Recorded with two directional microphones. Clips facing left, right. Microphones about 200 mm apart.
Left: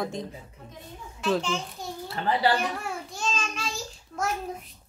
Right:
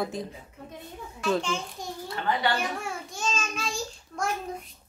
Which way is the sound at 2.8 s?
Centre (ahead or behind).